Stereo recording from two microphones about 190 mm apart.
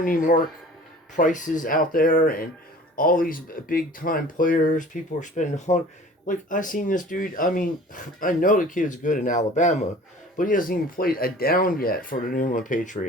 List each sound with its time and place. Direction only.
0.0 s speech: 45° left (ahead or behind)